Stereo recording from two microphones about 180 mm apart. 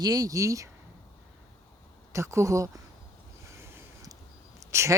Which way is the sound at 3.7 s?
20° right (ahead or behind).